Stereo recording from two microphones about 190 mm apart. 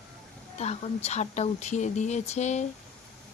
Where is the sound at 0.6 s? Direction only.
35° left (ahead or behind).